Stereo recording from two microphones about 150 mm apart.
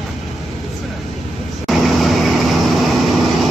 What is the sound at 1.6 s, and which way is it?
Vehicle, centre (ahead or behind).